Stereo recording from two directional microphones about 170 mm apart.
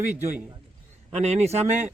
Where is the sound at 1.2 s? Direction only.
40° right (ahead or behind).